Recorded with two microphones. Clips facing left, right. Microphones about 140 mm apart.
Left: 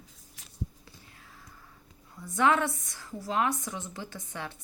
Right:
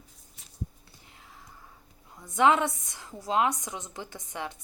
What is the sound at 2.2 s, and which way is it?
A woman's voice, 20° right (ahead or behind).